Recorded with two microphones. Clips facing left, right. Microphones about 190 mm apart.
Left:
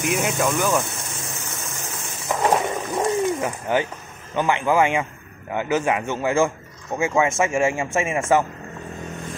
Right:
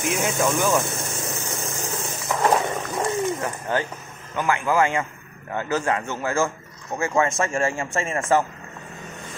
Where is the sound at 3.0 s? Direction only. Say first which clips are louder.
Left 3 dB; 15° left (ahead or behind).